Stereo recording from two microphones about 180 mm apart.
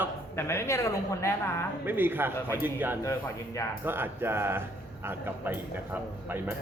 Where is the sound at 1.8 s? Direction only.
10° right (ahead or behind).